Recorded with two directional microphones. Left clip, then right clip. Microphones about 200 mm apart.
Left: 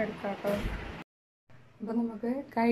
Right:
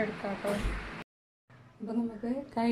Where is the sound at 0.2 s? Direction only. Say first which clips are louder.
Left 1 dB; centre (ahead or behind).